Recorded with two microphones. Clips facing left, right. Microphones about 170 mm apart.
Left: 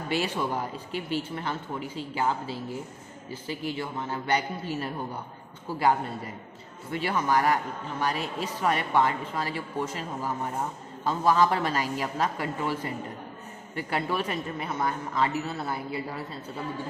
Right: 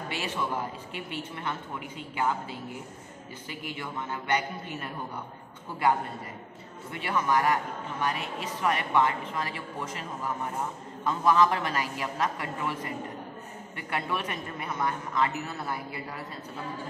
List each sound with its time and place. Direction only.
0.1 s a man's voice: 40° left (ahead or behind)